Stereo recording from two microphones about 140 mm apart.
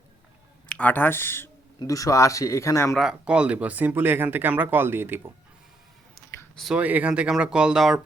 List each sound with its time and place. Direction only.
0.7 s speech: 10° left (ahead or behind)
2.9 s speech: 5° right (ahead or behind)
6.1 s a sound: centre (ahead or behind)
6.7 s speech: 10° right (ahead or behind)